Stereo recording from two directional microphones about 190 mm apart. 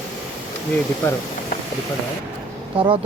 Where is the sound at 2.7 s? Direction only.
25° right (ahead or behind).